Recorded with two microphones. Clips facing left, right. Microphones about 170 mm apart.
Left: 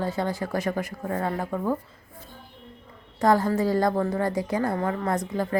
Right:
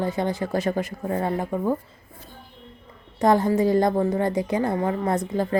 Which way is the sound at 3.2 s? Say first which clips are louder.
Right 2 dB; 20° right (ahead or behind).